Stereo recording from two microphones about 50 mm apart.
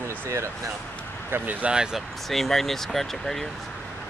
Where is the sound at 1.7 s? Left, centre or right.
Centre.